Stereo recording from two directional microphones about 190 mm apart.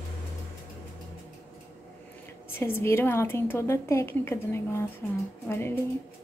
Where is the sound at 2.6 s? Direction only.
10° left (ahead or behind).